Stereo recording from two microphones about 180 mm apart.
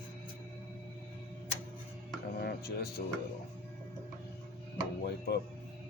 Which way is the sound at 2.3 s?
60° left (ahead or behind).